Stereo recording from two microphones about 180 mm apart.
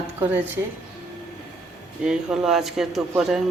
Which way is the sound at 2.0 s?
5° right (ahead or behind).